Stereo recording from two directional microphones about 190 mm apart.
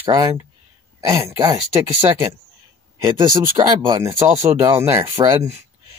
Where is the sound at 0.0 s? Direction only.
20° right (ahead or behind).